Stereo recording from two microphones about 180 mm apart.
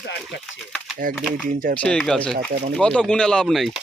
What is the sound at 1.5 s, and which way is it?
Speech, 50° right (ahead or behind).